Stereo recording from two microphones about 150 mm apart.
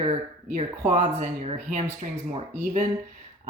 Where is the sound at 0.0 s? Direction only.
50° right (ahead or behind).